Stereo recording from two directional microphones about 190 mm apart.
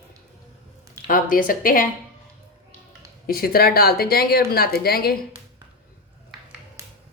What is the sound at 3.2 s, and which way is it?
A woman's voice, 50° left (ahead or behind).